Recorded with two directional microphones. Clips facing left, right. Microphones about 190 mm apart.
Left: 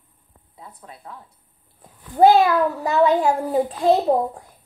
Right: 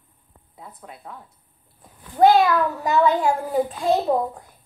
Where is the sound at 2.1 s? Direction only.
35° left (ahead or behind).